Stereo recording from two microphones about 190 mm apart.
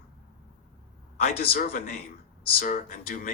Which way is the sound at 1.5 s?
45° left (ahead or behind).